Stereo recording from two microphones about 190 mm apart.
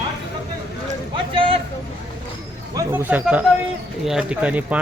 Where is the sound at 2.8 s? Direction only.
10° right (ahead or behind).